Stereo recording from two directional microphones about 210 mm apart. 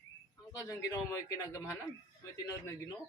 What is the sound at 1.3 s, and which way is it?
Speech, 15° left (ahead or behind).